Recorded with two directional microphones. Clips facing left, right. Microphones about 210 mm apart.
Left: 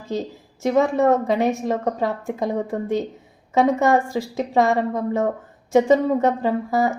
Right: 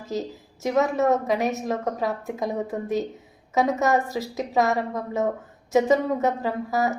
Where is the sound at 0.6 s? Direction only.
30° left (ahead or behind).